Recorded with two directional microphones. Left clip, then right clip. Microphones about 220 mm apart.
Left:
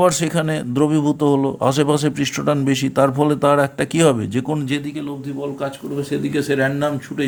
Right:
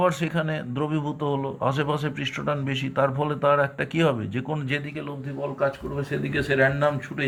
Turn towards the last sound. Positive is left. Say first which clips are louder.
# left 3 dB
turn(degrees=50)  # may be behind; listen again after turning